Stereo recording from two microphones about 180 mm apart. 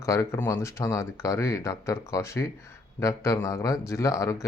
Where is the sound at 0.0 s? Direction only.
15° left (ahead or behind).